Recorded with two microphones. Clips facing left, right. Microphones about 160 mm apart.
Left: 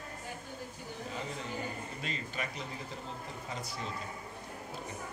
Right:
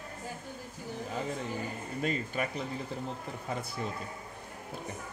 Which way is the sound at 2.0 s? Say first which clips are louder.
Right 10 dB; 50° right (ahead or behind).